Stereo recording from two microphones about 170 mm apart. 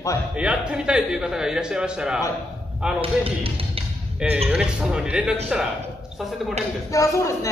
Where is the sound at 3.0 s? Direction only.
35° right (ahead or behind).